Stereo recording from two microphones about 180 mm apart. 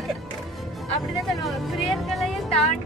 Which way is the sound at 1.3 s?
Centre (ahead or behind).